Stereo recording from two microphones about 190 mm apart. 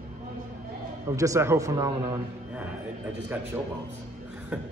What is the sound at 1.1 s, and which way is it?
Speech, 15° right (ahead or behind).